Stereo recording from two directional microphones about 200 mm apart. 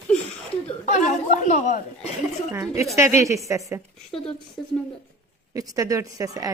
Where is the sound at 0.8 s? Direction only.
35° left (ahead or behind).